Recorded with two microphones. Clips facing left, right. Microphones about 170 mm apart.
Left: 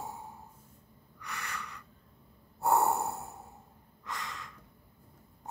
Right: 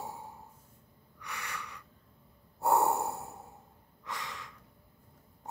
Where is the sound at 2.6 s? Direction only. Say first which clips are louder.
Even; 10° right (ahead or behind).